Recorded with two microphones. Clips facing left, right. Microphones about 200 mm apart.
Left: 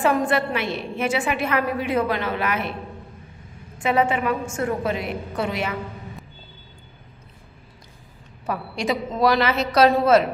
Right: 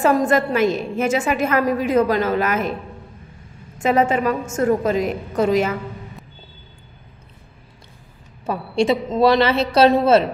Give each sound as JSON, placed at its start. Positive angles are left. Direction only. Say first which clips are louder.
{"t": 0.0, "sound": "a woman's voice", "louder": "right 4 dB", "side_deg": -40}
{"t": 3.7, "sound": "a woman's voice", "louder": "right 3 dB", "side_deg": -40}
{"t": 8.5, "sound": "a woman's voice", "louder": "right 6 dB", "side_deg": -25}